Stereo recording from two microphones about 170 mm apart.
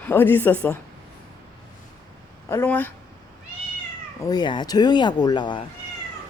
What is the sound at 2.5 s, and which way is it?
Speech, 15° left (ahead or behind).